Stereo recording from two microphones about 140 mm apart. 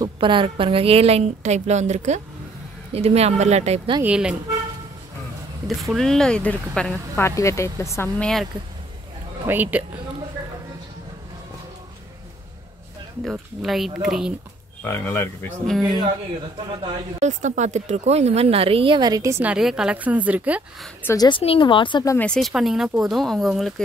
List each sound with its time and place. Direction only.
0.0 s a woman's voice: 35° right (ahead or behind)
4.0 s a woman's voice: 10° right (ahead or behind)
5.7 s speech: centre (ahead or behind)
7.2 s speech: 20° left (ahead or behind)
8.2 s speech: 5° left (ahead or behind)
9.5 s a woman's voice: 10° right (ahead or behind)
13.3 s speech: centre (ahead or behind)
14.9 s speech: 20° left (ahead or behind)
15.6 s speech: centre (ahead or behind)
17.2 s a woman's voice: 60° right (ahead or behind); by 19.4 s 25° right (ahead or behind)
19.4 s a woman's voice: 5° right (ahead or behind)
21.0 s speech: 20° left (ahead or behind)
21.3 s speech: 40° left (ahead or behind)
22.2 s speech: 5° left (ahead or behind)